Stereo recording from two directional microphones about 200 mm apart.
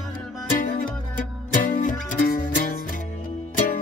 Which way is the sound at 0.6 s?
40° left (ahead or behind).